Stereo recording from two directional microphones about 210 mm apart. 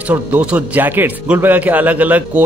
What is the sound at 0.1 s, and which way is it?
A man's voice, 5° right (ahead or behind).